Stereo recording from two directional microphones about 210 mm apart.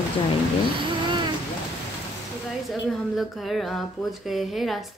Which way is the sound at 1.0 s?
20° right (ahead or behind).